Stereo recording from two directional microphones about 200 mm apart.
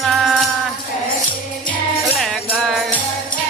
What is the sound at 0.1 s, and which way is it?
Music, centre (ahead or behind).